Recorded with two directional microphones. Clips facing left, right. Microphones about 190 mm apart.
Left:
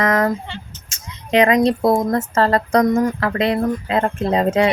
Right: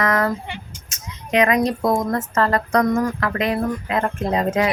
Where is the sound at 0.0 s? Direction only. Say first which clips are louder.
Left 3 dB; 20° left (ahead or behind).